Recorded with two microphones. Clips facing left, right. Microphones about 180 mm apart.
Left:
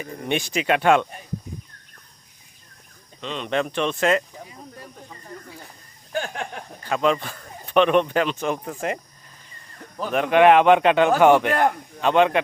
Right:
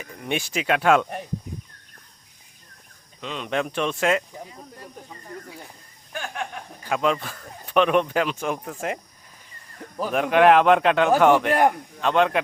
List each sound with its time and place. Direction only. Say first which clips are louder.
0.0 s speech: left 3 dB; 5° right (ahead or behind)
3.2 s speech: left 2 dB; 5° right (ahead or behind)
6.1 s a sound: left 5 dB; 35° left (ahead or behind)
6.8 s speech: left 2 dB; 5° right (ahead or behind)
10.0 s a man's voice: left 1 dB; 5° right (ahead or behind)